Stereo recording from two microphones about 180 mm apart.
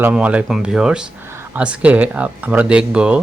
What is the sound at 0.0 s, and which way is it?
Speech, 5° right (ahead or behind).